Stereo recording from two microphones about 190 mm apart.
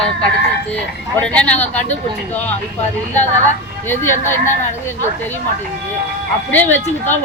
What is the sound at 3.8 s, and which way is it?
Speech, 10° left (ahead or behind).